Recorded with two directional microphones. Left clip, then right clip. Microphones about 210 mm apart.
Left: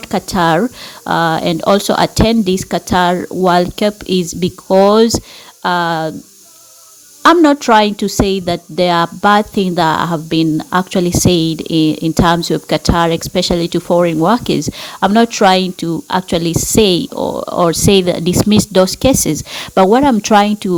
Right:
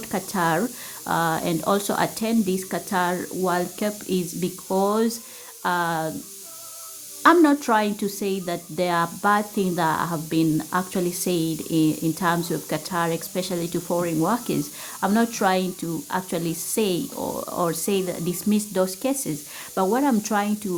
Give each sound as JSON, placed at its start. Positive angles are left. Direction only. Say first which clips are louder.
{"t": 0.1, "sound": "a woman's voice", "louder": "left 10 dB", "side_deg": 40}
{"t": 7.2, "sound": "a woman's voice", "louder": "left 8 dB", "side_deg": 35}